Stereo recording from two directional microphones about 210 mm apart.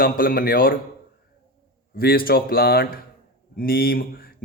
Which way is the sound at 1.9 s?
45° left (ahead or behind).